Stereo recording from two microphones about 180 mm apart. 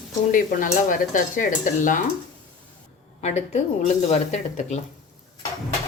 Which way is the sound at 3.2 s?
35° left (ahead or behind).